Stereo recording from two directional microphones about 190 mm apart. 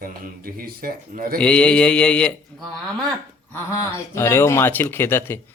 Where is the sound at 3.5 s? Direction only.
15° left (ahead or behind).